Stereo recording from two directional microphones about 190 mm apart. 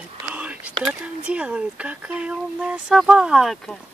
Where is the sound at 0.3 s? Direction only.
5° right (ahead or behind).